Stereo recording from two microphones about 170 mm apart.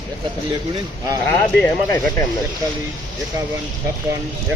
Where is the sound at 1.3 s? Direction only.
10° left (ahead or behind).